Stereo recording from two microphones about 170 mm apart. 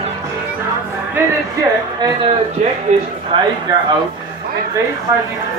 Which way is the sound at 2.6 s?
40° right (ahead or behind).